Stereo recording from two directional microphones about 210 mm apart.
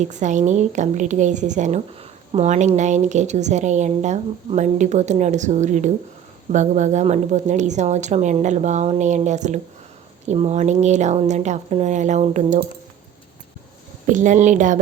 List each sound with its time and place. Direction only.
0.0 s a woman's voice: 35° right (ahead or behind)
14.1 s a woman's voice: 35° right (ahead or behind)